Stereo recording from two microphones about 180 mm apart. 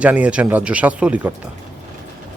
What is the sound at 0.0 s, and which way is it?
Speech, 5° right (ahead or behind).